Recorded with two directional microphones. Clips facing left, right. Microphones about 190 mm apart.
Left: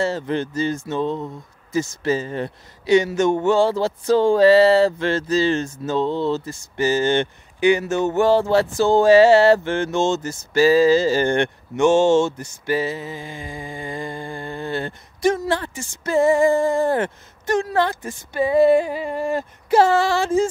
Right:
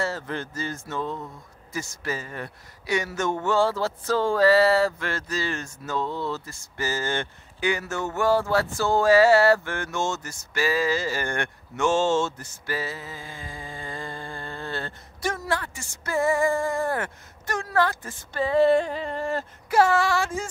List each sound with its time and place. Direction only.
0.0 s a man's voice: 20° left (ahead or behind)
19.7 s a man's voice: 30° left (ahead or behind)